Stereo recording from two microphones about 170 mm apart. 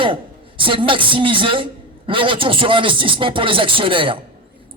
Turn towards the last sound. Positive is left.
turn(degrees=-30)  # may be behind; listen again after turning